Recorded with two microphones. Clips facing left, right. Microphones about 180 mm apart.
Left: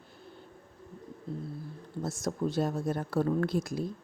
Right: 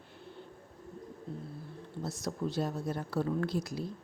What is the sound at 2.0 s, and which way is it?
Speech, 45° left (ahead or behind).